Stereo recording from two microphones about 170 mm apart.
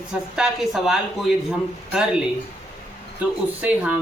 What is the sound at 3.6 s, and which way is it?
Speech, 10° right (ahead or behind).